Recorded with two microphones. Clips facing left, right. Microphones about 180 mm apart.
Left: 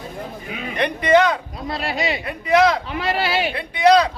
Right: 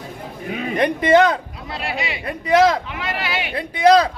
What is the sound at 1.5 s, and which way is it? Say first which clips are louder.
Speech: left 2 dB; 40° left (ahead or behind).